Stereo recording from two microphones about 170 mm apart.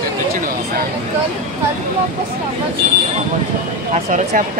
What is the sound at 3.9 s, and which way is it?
Speech, 45° right (ahead or behind).